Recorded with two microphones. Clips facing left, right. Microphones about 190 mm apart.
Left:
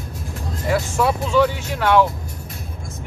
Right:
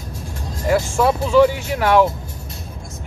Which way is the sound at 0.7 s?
Centre (ahead or behind).